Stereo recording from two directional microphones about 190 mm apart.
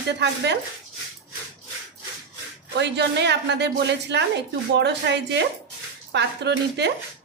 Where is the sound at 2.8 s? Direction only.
65° right (ahead or behind).